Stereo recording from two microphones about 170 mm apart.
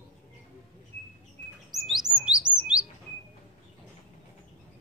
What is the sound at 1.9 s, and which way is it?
Bird, centre (ahead or behind).